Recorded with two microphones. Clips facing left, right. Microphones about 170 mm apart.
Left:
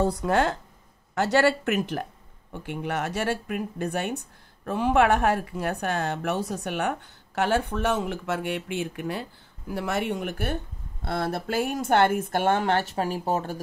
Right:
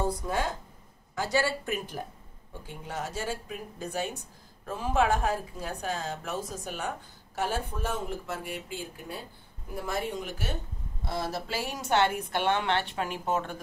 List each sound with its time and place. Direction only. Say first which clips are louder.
0.0 s speech: left 7 dB; 70° left (ahead or behind); by 13.6 s 35° left (ahead or behind)